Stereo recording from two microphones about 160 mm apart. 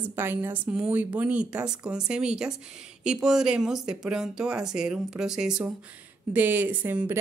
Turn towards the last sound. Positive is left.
turn(degrees=-10)  # may be behind; listen again after turning